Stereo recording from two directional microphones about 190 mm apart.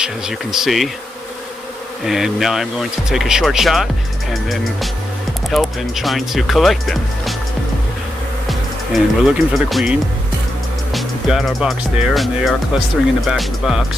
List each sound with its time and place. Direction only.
0.0 s speech: 5° right (ahead or behind)
2.0 s speech: centre (ahead or behind)
8.5 s speech: centre (ahead or behind)